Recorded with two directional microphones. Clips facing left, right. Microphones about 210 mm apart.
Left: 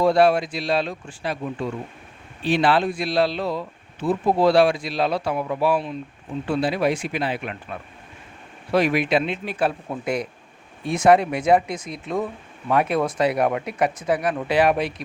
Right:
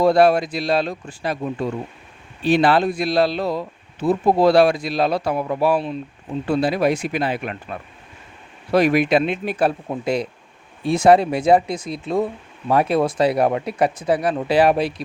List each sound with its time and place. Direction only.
0.0 s speech: 40° right (ahead or behind)
9.9 s speech: 30° right (ahead or behind)